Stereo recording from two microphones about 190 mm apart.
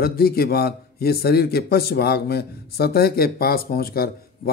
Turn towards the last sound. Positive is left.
turn(degrees=50)  # may be behind; listen again after turning